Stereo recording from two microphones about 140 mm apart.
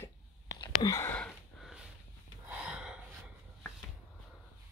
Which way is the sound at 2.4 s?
5° right (ahead or behind).